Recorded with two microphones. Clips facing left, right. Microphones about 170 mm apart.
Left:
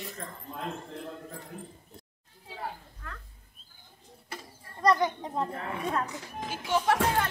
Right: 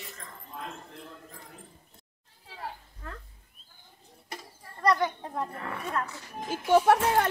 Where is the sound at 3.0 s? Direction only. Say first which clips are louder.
Right 3 dB; 30° right (ahead or behind).